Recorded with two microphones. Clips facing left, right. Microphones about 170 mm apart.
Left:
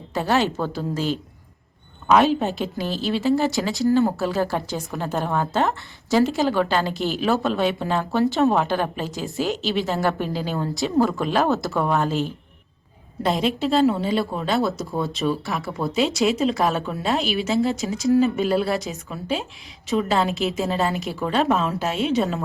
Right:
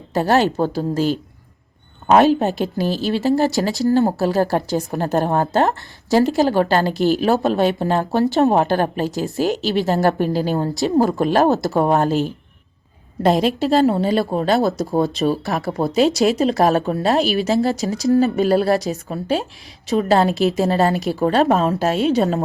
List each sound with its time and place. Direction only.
0.1 s a woman's voice: 40° right (ahead or behind)
2.1 s a woman's voice: 40° right (ahead or behind)
13.2 s a woman's voice: 45° right (ahead or behind)